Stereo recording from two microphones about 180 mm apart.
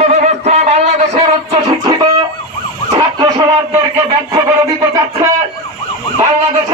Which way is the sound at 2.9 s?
25° right (ahead or behind).